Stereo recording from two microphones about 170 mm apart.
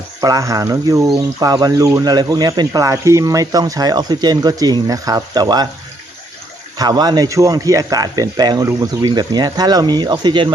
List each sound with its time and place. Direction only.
0.2 s speech: 20° right (ahead or behind)
6.7 s speech: 25° right (ahead or behind)